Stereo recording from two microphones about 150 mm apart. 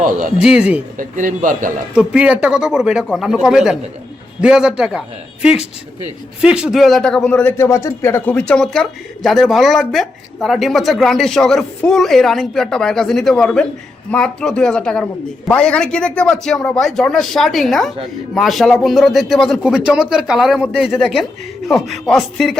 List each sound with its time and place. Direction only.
0.3 s speech: 5° right (ahead or behind)
0.9 s a man's voice: 60° right (ahead or behind)
2.0 s a man's voice: 10° right (ahead or behind)